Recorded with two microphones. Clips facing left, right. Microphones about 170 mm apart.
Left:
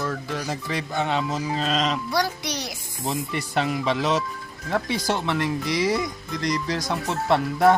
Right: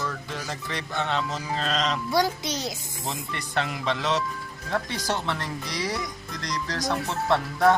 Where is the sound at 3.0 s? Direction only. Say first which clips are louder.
Left 7 dB; 10° left (ahead or behind).